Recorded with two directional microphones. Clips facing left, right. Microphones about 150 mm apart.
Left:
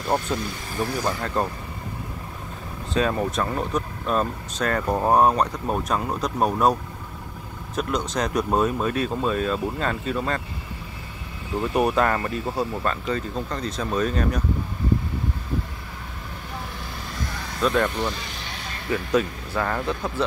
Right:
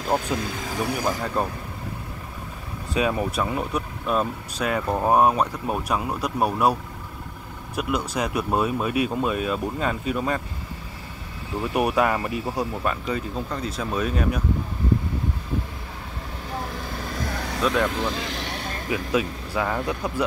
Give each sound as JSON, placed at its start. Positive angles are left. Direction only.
{"t": 0.7, "sound": "speech", "side_deg": -10}
{"t": 2.9, "sound": "speech", "side_deg": -10}
{"t": 11.7, "sound": "speech", "side_deg": -10}
{"t": 17.6, "sound": "speech", "side_deg": 0}
{"t": 17.8, "sound": "speech", "side_deg": -90}
{"t": 18.9, "sound": "speech", "side_deg": -10}